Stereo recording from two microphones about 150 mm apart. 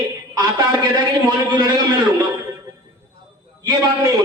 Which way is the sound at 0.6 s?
30° right (ahead or behind).